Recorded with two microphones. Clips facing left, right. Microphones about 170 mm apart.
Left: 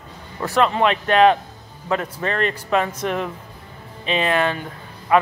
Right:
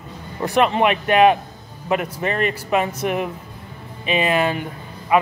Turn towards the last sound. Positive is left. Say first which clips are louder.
# even
turn(degrees=-10)  # may be behind; listen again after turning